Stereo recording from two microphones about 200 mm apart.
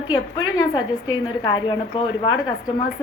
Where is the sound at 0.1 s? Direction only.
20° left (ahead or behind).